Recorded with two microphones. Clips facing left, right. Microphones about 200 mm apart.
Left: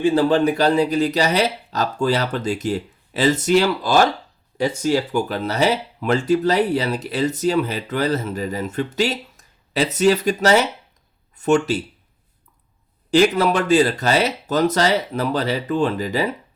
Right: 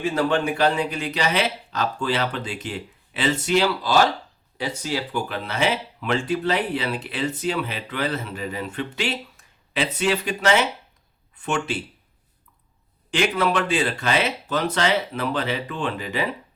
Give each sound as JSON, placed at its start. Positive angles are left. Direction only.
{"t": 0.0, "sound": "speech", "side_deg": 30}
{"t": 13.1, "sound": "speech", "side_deg": 40}